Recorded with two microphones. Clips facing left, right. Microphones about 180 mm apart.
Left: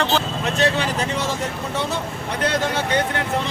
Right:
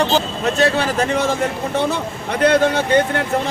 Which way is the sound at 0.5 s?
45° right (ahead or behind).